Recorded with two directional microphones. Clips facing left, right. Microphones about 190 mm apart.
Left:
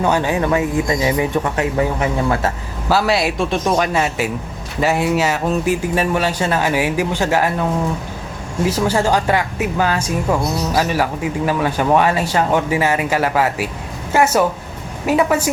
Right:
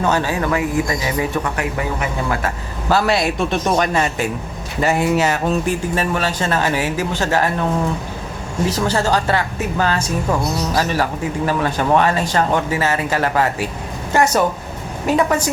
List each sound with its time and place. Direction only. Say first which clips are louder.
0.0 s speech: left 2 dB; 15° left (ahead or behind)
2.9 s speech: even; centre (ahead or behind)
5.9 s speech: left 2 dB; 10° left (ahead or behind)
8.9 s speech: left 2 dB; 10° left (ahead or behind)